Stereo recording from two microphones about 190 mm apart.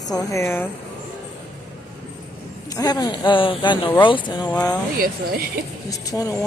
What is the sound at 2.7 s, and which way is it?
Speech, 20° left (ahead or behind).